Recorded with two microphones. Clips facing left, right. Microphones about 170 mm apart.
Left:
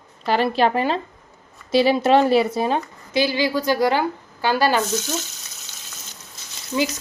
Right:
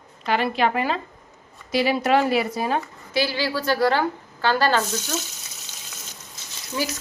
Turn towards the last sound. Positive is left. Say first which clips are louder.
# left 5 dB
turn(degrees=15)  # may be behind; listen again after turning